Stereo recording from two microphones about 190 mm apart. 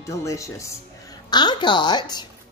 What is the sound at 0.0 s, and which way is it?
Speech, 15° left (ahead or behind).